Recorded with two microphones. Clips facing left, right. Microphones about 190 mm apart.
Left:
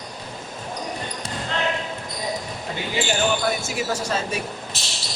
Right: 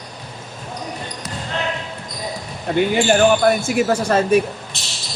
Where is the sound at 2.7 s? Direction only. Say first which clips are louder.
Right 10 dB; 60° right (ahead or behind).